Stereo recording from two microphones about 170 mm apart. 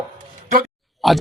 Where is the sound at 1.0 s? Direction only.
Centre (ahead or behind).